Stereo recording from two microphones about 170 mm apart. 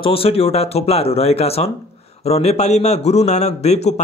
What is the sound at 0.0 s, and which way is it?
A man's voice, 35° left (ahead or behind).